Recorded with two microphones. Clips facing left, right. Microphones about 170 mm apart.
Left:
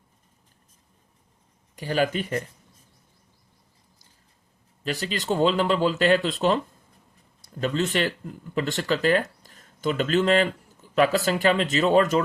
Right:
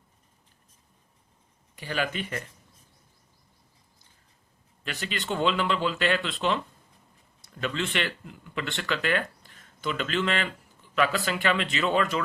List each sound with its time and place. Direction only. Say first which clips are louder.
1.7 s speech: left 6 dB; 40° left (ahead or behind)
4.8 s speech: left 6 dB; 35° left (ahead or behind)